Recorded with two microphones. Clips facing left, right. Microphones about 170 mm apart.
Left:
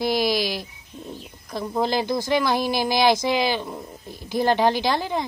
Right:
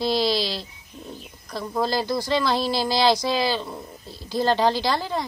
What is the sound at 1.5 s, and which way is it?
Speech, 20° left (ahead or behind).